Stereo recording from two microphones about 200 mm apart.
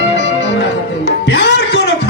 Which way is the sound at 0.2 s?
60° left (ahead or behind).